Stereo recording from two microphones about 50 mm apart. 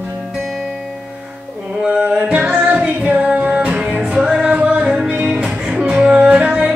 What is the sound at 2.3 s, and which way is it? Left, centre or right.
Music, right.